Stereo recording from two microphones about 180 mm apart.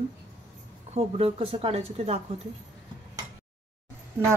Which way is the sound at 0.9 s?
30° right (ahead or behind).